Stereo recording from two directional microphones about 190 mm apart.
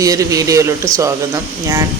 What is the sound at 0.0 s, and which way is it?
Speech, 15° right (ahead or behind).